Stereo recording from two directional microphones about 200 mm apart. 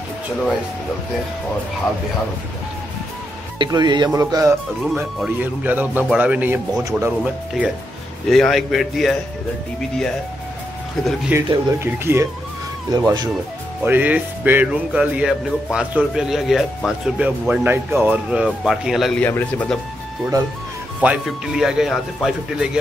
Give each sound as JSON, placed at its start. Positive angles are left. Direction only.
{"t": 3.5, "sound": "speech", "side_deg": -20}
{"t": 8.3, "sound": "music", "side_deg": 0}
{"t": 11.1, "sound": "speech", "side_deg": -5}
{"t": 13.8, "sound": "music", "side_deg": -10}
{"t": 19.2, "sound": "speech", "side_deg": 10}
{"t": 21.0, "sound": "music", "side_deg": -5}